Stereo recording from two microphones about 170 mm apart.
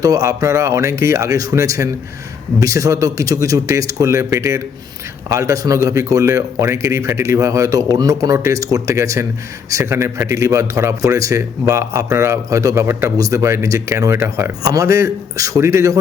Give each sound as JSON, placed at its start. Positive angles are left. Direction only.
{"t": 0.0, "sound": "a man's voice", "side_deg": -20}